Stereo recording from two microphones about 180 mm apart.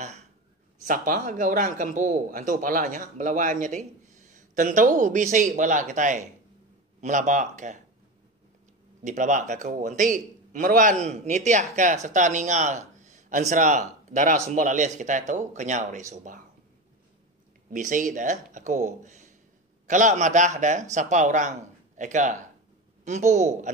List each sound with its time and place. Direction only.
0.8 s a man's voice: 50° right (ahead or behind)
9.0 s a man's voice: 45° right (ahead or behind)
17.6 s a man's voice: 45° right (ahead or behind)